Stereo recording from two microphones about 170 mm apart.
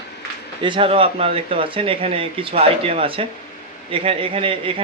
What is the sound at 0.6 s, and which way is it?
Speech, 30° right (ahead or behind).